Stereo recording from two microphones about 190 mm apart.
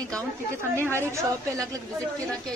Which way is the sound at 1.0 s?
15° right (ahead or behind).